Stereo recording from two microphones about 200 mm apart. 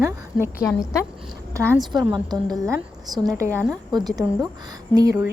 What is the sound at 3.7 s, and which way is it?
Speech, 20° right (ahead or behind).